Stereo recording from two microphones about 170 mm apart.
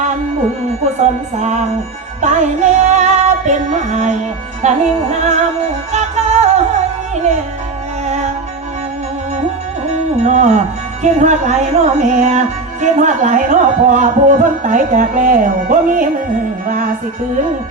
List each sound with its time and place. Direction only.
1.4 s music: 45° right (ahead or behind)
8.0 s music: 45° right (ahead or behind)
9.9 s music: 45° right (ahead or behind)